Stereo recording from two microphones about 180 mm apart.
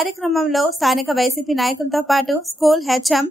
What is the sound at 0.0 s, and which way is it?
A woman's voice, centre (ahead or behind).